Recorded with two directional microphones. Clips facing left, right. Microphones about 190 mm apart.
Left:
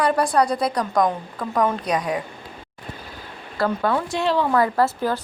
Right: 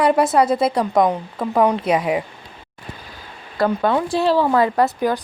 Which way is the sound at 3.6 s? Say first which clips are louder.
Right 3 dB; 20° right (ahead or behind).